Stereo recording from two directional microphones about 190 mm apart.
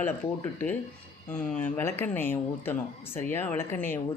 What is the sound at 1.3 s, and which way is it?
A man's voice, 5° left (ahead or behind).